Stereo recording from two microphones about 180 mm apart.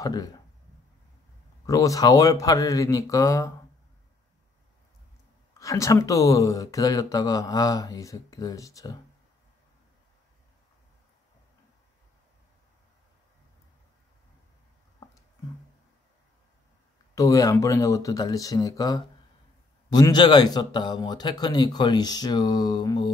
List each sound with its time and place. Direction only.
0.0 s speech: 20° left (ahead or behind)
1.7 s speech: 20° left (ahead or behind)
5.6 s speech: 20° left (ahead or behind)
17.1 s speech: 20° left (ahead or behind)